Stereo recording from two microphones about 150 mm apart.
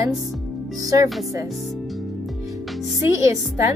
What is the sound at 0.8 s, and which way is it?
Speech, 25° right (ahead or behind).